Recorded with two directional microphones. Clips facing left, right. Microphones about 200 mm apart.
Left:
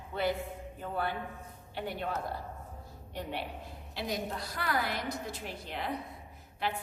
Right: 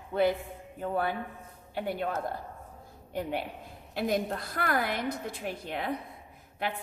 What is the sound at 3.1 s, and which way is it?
A woman's voice, 50° right (ahead or behind).